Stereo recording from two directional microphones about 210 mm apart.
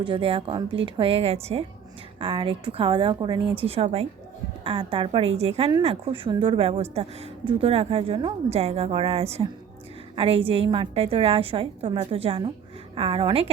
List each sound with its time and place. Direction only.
0.0 s a woman's voice: 25° right (ahead or behind)